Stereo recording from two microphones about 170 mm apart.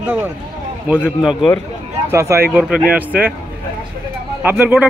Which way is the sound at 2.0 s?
15° right (ahead or behind).